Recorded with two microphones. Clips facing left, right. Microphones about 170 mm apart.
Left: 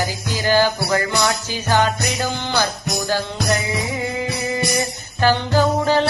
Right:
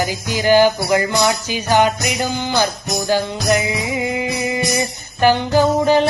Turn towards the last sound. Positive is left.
turn(degrees=-15)  # may be behind; listen again after turning